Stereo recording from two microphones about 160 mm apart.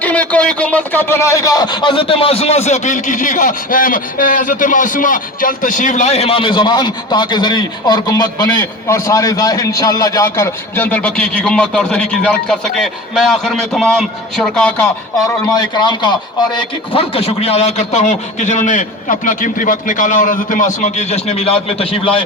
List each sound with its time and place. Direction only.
0.0 s a man's voice: 10° left (ahead or behind)
15.4 s a man's voice: 25° left (ahead or behind)